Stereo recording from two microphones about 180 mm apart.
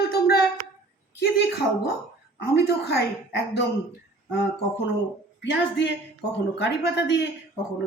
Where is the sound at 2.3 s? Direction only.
75° left (ahead or behind).